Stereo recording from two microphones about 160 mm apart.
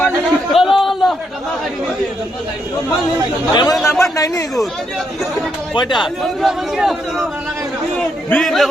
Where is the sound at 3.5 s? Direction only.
25° left (ahead or behind).